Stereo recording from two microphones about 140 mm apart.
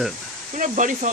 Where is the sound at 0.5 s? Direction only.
65° right (ahead or behind).